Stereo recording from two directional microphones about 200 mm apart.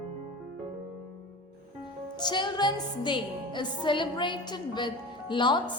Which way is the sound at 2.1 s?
20° left (ahead or behind).